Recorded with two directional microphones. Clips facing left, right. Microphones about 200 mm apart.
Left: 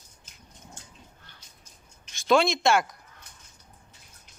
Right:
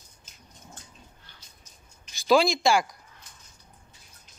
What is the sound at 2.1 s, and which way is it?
Speech, centre (ahead or behind).